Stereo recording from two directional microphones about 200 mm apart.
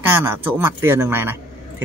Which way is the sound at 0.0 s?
10° right (ahead or behind).